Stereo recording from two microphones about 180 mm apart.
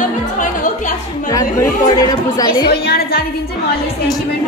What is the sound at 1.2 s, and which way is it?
Speech, 20° left (ahead or behind).